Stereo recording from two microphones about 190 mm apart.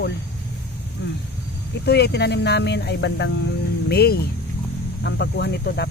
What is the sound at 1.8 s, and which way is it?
Speech, 60° left (ahead or behind).